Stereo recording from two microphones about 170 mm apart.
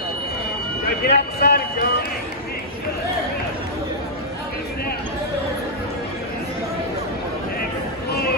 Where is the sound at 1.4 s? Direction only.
65° left (ahead or behind).